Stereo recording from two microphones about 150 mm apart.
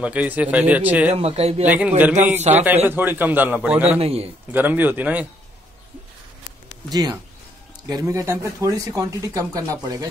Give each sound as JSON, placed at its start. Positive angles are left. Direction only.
{"t": 0.0, "sound": "a man's voice", "side_deg": -10}
{"t": 1.1, "sound": "speech", "side_deg": -40}
{"t": 1.7, "sound": "a man's voice", "side_deg": -10}
{"t": 4.0, "sound": "a man's voice", "side_deg": -40}
{"t": 4.5, "sound": "a man's voice", "side_deg": -10}
{"t": 6.9, "sound": "speech", "side_deg": -25}